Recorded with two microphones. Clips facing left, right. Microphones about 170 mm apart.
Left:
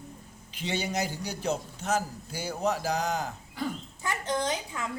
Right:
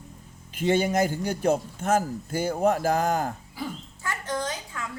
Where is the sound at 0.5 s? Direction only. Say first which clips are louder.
Right 8 dB; 50° right (ahead or behind).